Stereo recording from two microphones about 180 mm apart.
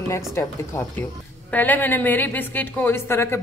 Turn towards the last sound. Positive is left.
turn(degrees=15)  # may be behind; listen again after turning